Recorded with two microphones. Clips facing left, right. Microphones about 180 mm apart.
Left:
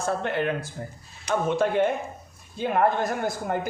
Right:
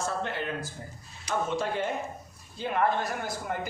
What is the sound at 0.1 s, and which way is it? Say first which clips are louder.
Speech: left 6 dB; 60° left (ahead or behind).